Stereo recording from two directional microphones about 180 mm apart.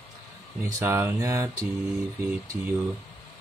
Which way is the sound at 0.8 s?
15° right (ahead or behind).